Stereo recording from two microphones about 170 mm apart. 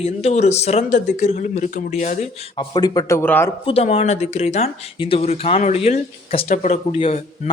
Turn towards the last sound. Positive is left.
turn(degrees=40)  # may be behind; listen again after turning